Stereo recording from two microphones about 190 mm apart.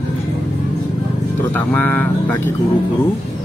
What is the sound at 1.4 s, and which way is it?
Speech, 10° left (ahead or behind).